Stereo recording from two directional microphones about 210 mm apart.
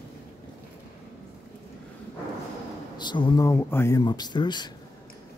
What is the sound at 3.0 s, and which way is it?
Speech, 20° left (ahead or behind).